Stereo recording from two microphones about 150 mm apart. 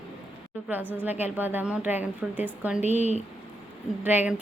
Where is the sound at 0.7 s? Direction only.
10° right (ahead or behind).